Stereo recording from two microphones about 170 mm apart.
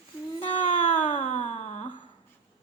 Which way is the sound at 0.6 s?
45° left (ahead or behind).